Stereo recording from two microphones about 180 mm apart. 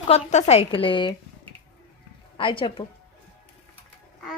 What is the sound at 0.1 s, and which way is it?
A woman's voice, 40° left (ahead or behind).